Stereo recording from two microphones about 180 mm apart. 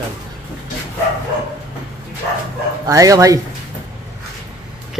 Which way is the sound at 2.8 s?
20° right (ahead or behind).